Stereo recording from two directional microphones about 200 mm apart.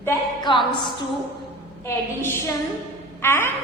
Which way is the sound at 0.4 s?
25° left (ahead or behind).